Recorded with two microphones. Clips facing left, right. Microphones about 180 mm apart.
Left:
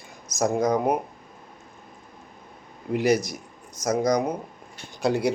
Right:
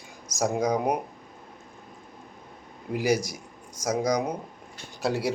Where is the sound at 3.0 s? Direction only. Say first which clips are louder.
Left 3 dB; 10° right (ahead or behind).